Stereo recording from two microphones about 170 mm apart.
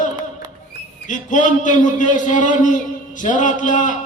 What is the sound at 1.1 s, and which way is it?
A man's voice, 45° left (ahead or behind).